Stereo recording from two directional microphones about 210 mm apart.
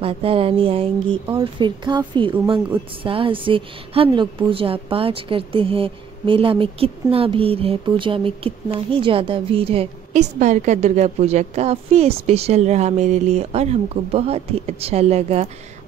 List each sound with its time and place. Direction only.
0.0 s speech: 25° right (ahead or behind)